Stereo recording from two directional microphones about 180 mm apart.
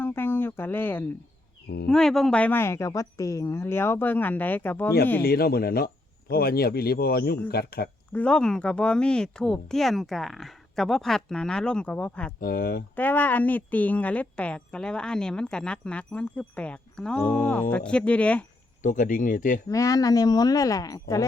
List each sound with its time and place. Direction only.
0.0 s a sound: 10° left (ahead or behind)
1.9 s a woman's voice: 5° left (ahead or behind)
5.2 s speech: 60° left (ahead or behind)
8.1 s speech: 5° left (ahead or behind)
12.4 s speech: 55° left (ahead or behind)
13.0 s a woman's voice: 10° left (ahead or behind)
18.8 s speech: 45° left (ahead or behind)
19.6 s speech: 20° left (ahead or behind)